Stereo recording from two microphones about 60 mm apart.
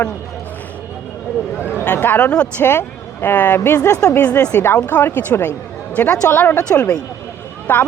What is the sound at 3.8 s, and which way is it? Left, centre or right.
Speech, left.